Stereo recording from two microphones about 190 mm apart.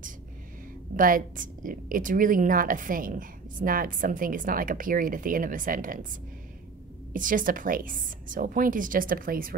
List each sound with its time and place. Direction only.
0.9 s a woman's voice: 45° right (ahead or behind)
7.1 s a woman's voice: 45° right (ahead or behind)